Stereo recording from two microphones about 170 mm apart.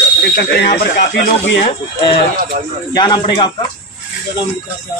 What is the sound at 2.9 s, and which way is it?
Speech, 25° left (ahead or behind).